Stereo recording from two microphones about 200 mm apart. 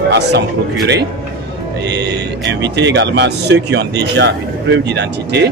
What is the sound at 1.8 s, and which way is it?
Speech, 60° right (ahead or behind).